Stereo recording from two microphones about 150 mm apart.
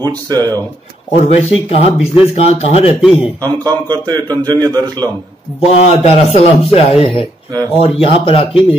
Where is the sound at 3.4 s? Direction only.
25° right (ahead or behind).